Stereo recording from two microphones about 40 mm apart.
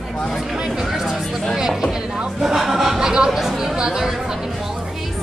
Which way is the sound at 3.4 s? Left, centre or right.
Centre.